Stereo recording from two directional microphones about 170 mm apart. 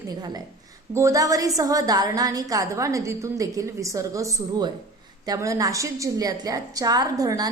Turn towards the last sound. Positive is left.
turn(degrees=-20)  # may be behind; listen again after turning